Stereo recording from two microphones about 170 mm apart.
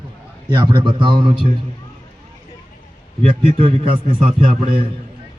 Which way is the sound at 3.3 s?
35° right (ahead or behind).